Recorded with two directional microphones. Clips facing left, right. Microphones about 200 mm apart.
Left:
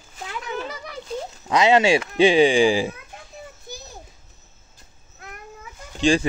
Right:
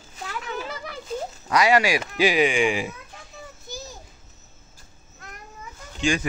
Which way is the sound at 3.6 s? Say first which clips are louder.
Right 2 dB; 60° left (ahead or behind).